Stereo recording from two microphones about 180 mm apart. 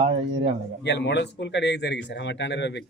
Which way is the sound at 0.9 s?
75° left (ahead or behind).